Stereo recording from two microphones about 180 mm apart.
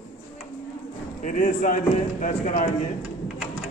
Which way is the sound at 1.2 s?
45° left (ahead or behind).